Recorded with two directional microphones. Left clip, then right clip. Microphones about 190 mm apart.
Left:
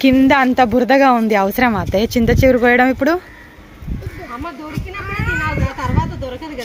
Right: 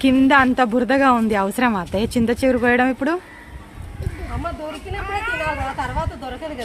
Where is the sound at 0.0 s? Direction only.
15° left (ahead or behind).